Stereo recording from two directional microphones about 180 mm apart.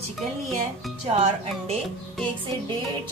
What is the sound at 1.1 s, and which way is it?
Speech, 35° right (ahead or behind).